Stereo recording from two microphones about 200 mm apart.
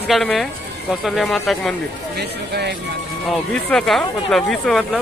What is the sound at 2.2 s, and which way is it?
Speech, 55° right (ahead or behind).